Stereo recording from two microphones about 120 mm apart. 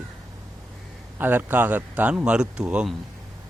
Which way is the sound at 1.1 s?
15° right (ahead or behind).